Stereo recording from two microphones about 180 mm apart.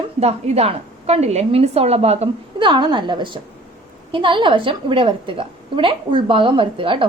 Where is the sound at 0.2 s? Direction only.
35° right (ahead or behind).